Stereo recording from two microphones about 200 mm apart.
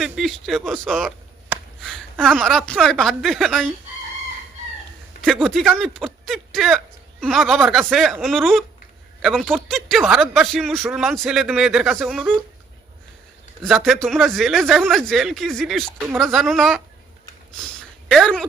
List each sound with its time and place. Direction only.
0.0 s speech: centre (ahead or behind)
5.2 s speech: centre (ahead or behind)
13.6 s speech: centre (ahead or behind)
17.6 s a sound: 5° left (ahead or behind)